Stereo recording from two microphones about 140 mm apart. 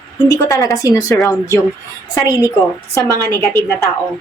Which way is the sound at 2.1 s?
25° left (ahead or behind).